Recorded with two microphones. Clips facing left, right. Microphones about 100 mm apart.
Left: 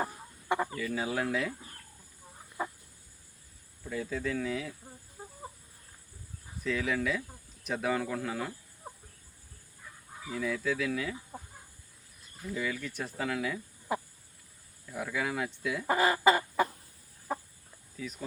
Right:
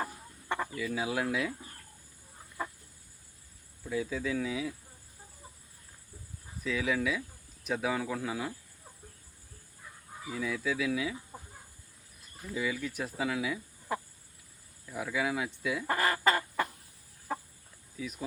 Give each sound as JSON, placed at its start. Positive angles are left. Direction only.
{"t": 0.0, "sound": "chicken", "side_deg": 15}
{"t": 0.8, "sound": "speech", "side_deg": -5}
{"t": 2.6, "sound": "chicken", "side_deg": 15}
{"t": 3.8, "sound": "speech", "side_deg": 0}
{"t": 5.2, "sound": "chicken", "side_deg": 60}
{"t": 6.6, "sound": "speech", "side_deg": 0}
{"t": 10.2, "sound": "speech", "side_deg": 0}
{"t": 12.5, "sound": "speech", "side_deg": -5}
{"t": 13.9, "sound": "chicken", "side_deg": 15}
{"t": 14.9, "sound": "speech", "side_deg": 0}
{"t": 15.9, "sound": "fowl", "side_deg": 15}
{"t": 17.9, "sound": "speech", "side_deg": -5}